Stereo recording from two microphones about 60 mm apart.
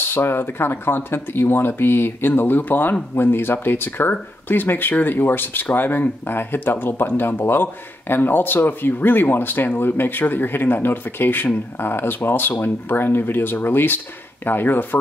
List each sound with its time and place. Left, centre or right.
0.0 s speech: left